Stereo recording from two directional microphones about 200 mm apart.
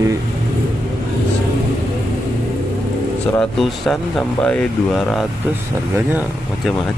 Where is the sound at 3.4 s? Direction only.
Centre (ahead or behind).